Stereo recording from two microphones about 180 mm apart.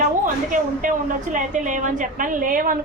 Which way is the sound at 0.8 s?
45° right (ahead or behind).